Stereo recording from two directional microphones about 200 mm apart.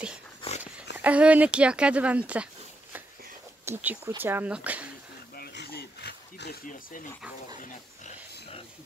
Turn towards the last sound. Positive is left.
turn(degrees=50)  # may be behind; listen again after turning